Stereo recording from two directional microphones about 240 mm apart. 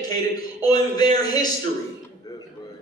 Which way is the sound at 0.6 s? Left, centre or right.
Centre.